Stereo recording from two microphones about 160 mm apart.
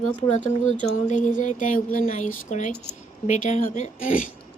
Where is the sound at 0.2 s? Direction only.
50° left (ahead or behind).